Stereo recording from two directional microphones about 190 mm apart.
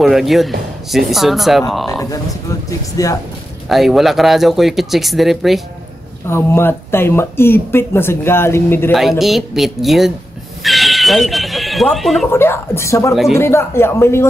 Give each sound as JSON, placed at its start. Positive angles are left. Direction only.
{"t": 0.0, "sound": "speech", "side_deg": 0}
{"t": 3.0, "sound": "speech", "side_deg": 20}
{"t": 3.6, "sound": "speech", "side_deg": 0}
{"t": 6.2, "sound": "speech", "side_deg": 15}
{"t": 9.2, "sound": "speech", "side_deg": 0}
{"t": 10.6, "sound": "a sound", "side_deg": 0}
{"t": 12.3, "sound": "speech", "side_deg": 10}
{"t": 13.1, "sound": "speech", "side_deg": 0}
{"t": 13.4, "sound": "speech", "side_deg": 15}